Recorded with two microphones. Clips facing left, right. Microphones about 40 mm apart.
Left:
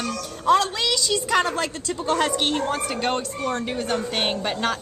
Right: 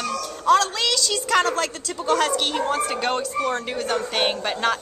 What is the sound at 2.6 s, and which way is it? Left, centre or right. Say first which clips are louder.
Speech: right 2 dB; centre.